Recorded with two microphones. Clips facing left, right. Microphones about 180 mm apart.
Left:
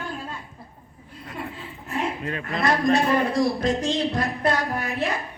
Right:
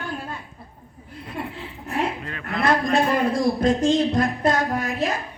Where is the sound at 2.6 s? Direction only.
50° right (ahead or behind).